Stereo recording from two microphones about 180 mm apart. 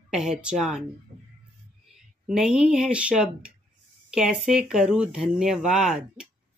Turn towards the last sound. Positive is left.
turn(degrees=-5)  # may be behind; listen again after turning